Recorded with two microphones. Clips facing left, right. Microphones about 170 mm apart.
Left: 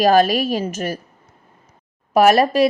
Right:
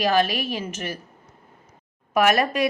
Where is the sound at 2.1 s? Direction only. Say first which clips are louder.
Left 6 dB; 35° left (ahead or behind).